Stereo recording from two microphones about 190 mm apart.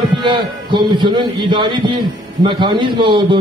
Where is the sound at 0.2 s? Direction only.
25° right (ahead or behind).